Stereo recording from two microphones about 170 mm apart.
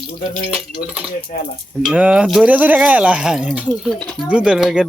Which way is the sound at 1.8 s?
5° right (ahead or behind).